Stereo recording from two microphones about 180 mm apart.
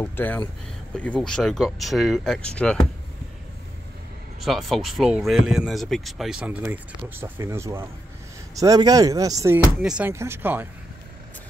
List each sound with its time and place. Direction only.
0.0 s speech: 10° left (ahead or behind)
4.5 s speech: centre (ahead or behind); by 9.6 s 20° right (ahead or behind)
9.8 s speech: 10° right (ahead or behind)